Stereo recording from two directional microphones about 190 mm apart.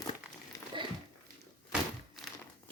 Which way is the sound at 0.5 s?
20° left (ahead or behind).